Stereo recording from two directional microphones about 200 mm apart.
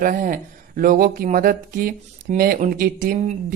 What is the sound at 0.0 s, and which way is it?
Speech, 40° right (ahead or behind).